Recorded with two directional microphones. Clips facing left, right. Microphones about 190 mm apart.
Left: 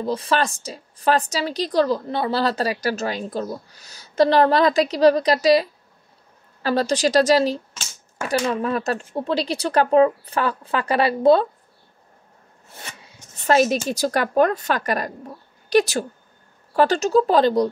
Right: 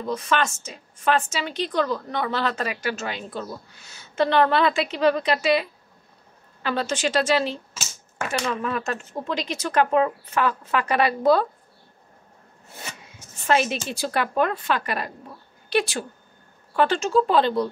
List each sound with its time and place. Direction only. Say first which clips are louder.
0.0 s a woman's voice: left 3 dB; 30° left (ahead or behind)
13.5 s a woman's voice: left 5 dB; 40° left (ahead or behind)